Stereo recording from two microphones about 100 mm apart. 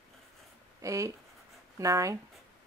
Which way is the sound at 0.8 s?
35° right (ahead or behind).